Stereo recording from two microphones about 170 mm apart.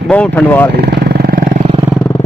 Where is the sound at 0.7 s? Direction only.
70° right (ahead or behind).